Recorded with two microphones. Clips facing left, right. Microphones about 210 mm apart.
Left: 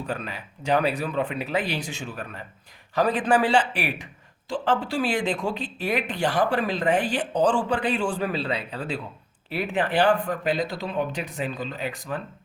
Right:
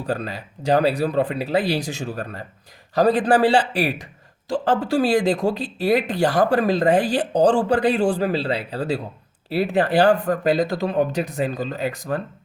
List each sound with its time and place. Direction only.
0.0 s speech: 35° right (ahead or behind)